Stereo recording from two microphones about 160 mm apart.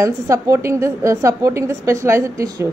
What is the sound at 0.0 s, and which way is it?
A woman's voice, 20° right (ahead or behind).